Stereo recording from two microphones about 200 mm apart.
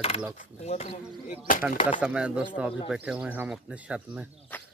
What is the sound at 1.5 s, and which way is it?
Speech, 45° left (ahead or behind).